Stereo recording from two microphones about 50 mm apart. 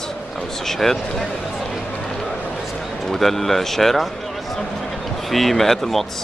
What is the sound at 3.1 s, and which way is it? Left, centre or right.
Speech, centre.